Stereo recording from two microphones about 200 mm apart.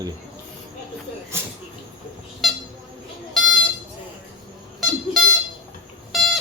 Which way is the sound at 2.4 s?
Centre (ahead or behind).